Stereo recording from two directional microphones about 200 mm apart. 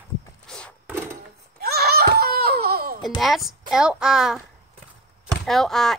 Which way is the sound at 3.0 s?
Centre (ahead or behind).